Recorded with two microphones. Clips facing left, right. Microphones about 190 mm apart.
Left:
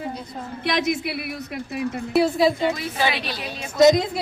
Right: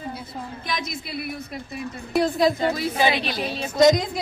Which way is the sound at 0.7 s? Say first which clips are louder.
Left 10 dB; 75° left (ahead or behind).